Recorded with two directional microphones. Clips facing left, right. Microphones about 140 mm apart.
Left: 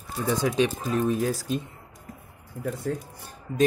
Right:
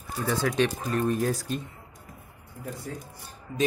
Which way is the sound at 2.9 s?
65° left (ahead or behind).